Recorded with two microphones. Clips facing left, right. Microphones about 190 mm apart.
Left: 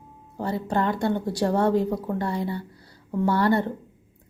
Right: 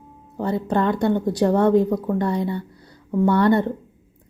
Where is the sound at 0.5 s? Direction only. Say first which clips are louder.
Right 4 dB; 20° right (ahead or behind).